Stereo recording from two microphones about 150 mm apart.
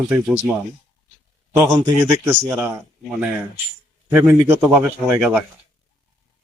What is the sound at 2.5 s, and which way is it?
Speech, 15° right (ahead or behind).